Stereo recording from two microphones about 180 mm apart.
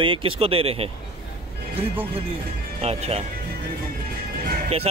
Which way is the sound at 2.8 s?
35° right (ahead or behind).